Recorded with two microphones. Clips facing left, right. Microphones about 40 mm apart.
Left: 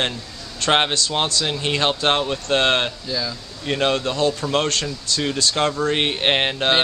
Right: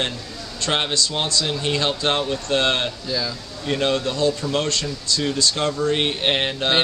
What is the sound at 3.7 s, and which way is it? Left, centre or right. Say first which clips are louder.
Speech: left 1 dB; centre.